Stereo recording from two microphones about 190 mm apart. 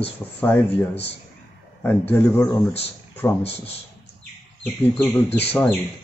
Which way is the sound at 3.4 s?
30° left (ahead or behind).